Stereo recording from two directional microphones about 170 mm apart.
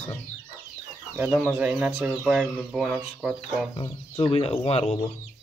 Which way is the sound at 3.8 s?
30° left (ahead or behind).